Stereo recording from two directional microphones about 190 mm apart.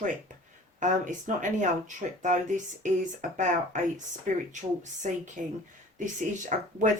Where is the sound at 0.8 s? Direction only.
40° right (ahead or behind).